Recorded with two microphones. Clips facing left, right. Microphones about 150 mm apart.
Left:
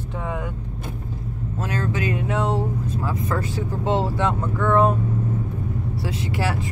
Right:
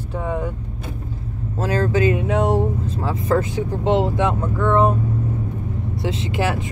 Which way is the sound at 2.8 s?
30° right (ahead or behind).